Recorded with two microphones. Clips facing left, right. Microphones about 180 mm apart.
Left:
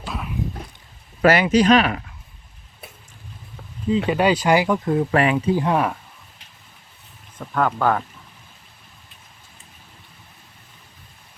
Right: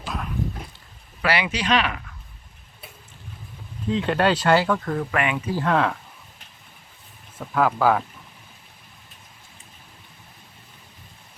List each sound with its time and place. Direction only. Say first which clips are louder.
0.0 s dog: left 1 dB; 5° left (ahead or behind)
1.2 s speech: left 9 dB; 45° left (ahead or behind)
3.8 s speech: left 3 dB; 5° left (ahead or behind)
5.1 s speech: left 6 dB; 35° left (ahead or behind)
5.5 s speech: left 2 dB; 15° left (ahead or behind)
7.3 s speech: even; 5° right (ahead or behind)